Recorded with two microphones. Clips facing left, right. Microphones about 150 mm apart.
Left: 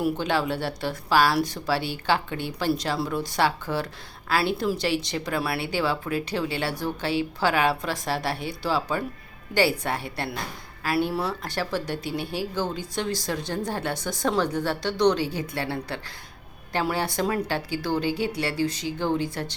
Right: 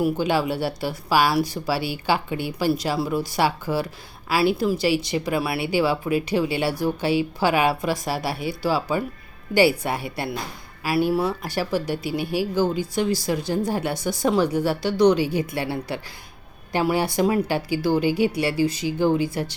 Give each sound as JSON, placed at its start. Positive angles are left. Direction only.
{"t": 0.0, "sound": "speech", "side_deg": -10}